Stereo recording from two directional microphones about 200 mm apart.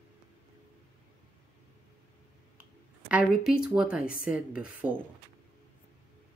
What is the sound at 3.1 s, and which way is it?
Speech, 5° right (ahead or behind).